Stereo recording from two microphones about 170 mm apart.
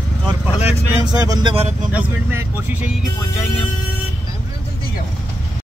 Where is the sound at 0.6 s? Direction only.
10° right (ahead or behind).